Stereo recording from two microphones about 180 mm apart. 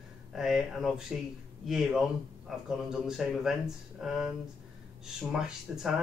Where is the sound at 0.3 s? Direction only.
Centre (ahead or behind).